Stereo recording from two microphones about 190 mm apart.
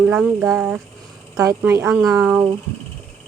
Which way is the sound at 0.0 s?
5° right (ahead or behind).